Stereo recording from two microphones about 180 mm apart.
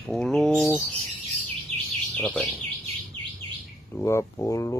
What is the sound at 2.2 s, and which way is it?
Speech, centre (ahead or behind).